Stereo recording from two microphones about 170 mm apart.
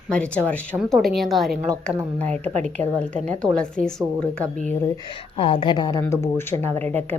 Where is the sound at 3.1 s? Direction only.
45° right (ahead or behind).